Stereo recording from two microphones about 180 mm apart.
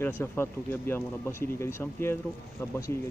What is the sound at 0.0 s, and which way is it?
Speech, 15° left (ahead or behind).